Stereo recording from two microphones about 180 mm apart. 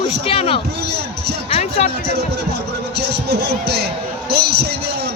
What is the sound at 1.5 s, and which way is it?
Music, 35° left (ahead or behind).